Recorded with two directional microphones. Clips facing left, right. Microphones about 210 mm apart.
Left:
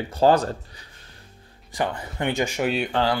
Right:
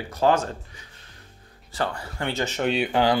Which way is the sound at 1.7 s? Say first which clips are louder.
Left 2 dB; 15° left (ahead or behind).